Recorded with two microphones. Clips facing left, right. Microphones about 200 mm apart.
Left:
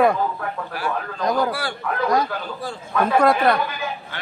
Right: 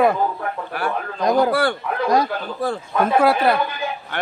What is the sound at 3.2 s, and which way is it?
Speech, 5° right (ahead or behind).